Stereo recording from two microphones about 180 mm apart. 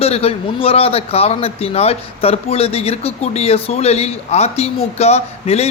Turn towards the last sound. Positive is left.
turn(degrees=35)  # may be behind; listen again after turning